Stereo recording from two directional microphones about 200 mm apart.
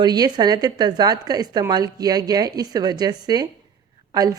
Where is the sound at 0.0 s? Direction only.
20° right (ahead or behind).